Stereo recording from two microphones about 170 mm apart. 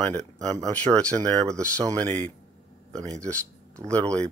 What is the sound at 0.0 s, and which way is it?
Speech, 10° left (ahead or behind).